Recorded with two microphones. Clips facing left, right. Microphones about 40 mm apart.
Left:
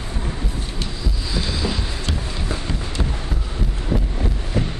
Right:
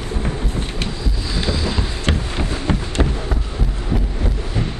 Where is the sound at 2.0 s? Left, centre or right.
Right.